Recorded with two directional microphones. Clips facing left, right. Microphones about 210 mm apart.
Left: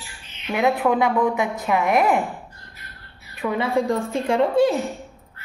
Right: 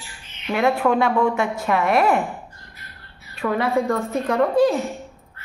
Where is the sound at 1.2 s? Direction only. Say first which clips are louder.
Right 1 dB; 15° left (ahead or behind).